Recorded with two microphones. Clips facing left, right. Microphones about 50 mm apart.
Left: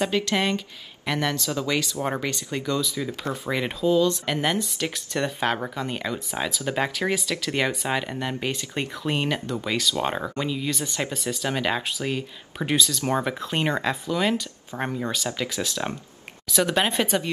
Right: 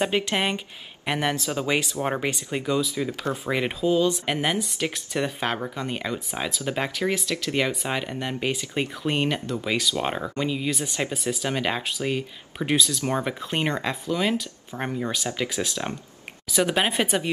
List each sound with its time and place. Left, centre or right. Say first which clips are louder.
0.0 s speech: even; right; by 10.5 s centre
10.5 s speech: right 1 dB; centre